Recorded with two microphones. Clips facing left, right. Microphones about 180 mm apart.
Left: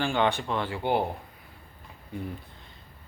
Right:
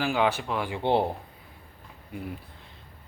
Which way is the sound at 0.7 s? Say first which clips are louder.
Right 4 dB; 25° right (ahead or behind).